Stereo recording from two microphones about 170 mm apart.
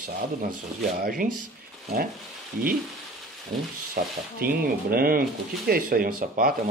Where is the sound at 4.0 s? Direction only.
60° right (ahead or behind).